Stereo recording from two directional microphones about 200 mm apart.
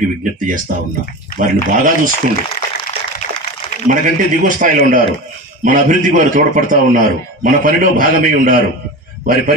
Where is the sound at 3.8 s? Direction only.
40° right (ahead or behind).